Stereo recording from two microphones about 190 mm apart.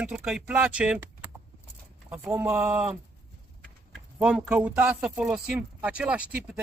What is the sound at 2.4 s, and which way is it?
Speech, 5° right (ahead or behind).